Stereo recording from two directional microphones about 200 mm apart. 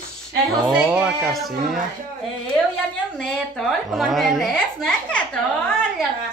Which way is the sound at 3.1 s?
5° left (ahead or behind).